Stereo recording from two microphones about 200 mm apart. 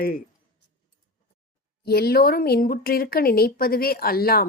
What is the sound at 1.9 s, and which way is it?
Speech, 50° left (ahead or behind).